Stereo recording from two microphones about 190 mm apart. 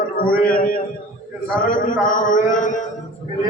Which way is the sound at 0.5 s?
50° left (ahead or behind).